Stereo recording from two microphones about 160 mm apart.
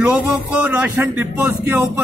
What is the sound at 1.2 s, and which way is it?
Speech, 10° right (ahead or behind).